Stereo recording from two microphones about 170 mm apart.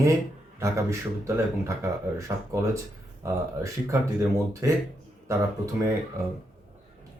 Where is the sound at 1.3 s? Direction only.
15° right (ahead or behind).